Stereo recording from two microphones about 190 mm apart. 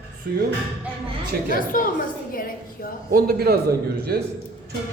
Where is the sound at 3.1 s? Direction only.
50° right (ahead or behind).